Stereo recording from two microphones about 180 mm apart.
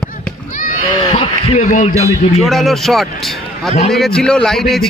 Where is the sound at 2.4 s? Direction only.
Centre (ahead or behind).